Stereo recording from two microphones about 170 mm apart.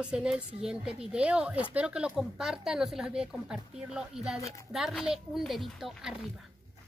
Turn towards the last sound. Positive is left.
turn(degrees=0)  # may be behind; listen again after turning